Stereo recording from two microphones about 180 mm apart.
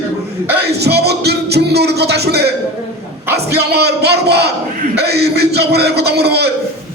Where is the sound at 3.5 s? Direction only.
65° right (ahead or behind).